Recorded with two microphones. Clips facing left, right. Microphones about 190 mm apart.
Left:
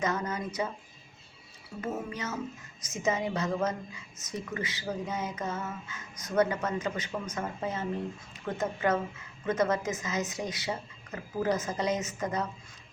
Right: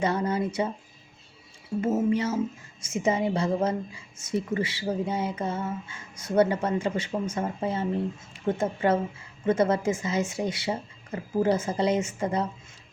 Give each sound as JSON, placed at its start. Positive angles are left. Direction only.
{"t": 0.0, "sound": "speech", "side_deg": -30}
{"t": 1.8, "sound": "a woman's voice", "side_deg": -25}